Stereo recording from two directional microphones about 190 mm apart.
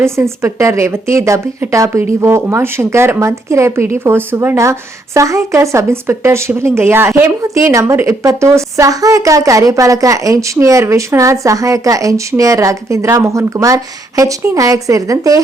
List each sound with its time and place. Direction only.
0.0 s speech: 15° right (ahead or behind)